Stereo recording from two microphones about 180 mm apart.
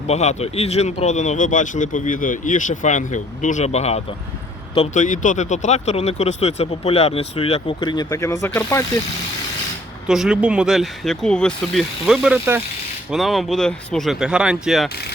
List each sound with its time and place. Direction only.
0.1 s speech: 40° left (ahead or behind); by 8.8 s 15° left (ahead or behind)
10.1 s speech: 5° right (ahead or behind)